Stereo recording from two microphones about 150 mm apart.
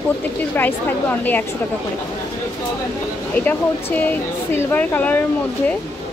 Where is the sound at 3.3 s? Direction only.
10° left (ahead or behind).